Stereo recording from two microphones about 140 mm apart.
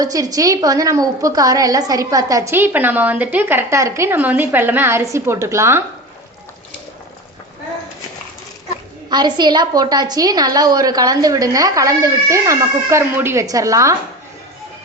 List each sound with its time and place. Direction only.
0.0 s a woman's voice: 25° right (ahead or behind)
9.0 s a woman's voice: 30° right (ahead or behind)